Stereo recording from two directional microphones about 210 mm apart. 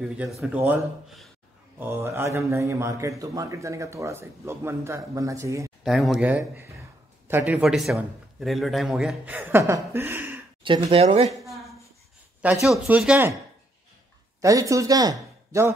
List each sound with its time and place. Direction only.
0.0 s a man's voice: centre (ahead or behind)
5.9 s a man's voice: centre (ahead or behind)
10.6 s speech: 25° right (ahead or behind)
12.6 s a man's voice: 5° right (ahead or behind)
14.4 s speech: 15° right (ahead or behind)